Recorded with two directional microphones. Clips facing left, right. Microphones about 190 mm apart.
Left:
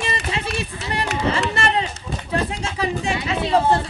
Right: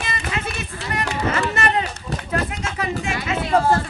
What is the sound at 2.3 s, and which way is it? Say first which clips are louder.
Music: left 2 dB; 30° left (ahead or behind).